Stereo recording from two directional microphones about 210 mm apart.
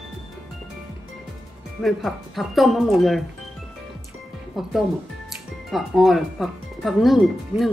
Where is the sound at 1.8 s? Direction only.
Centre (ahead or behind).